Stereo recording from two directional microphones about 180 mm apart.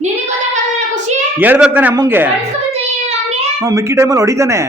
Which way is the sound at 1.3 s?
10° right (ahead or behind).